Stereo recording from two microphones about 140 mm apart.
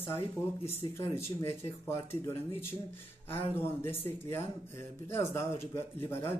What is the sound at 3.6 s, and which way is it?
A man's voice, 15° left (ahead or behind).